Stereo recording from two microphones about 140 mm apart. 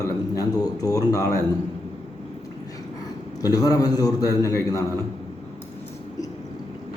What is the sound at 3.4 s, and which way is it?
A man's voice, 25° left (ahead or behind).